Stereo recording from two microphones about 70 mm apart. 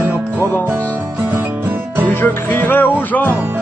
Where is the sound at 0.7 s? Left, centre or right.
Right.